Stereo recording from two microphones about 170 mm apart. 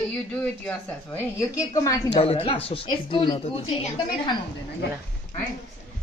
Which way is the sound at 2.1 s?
35° left (ahead or behind).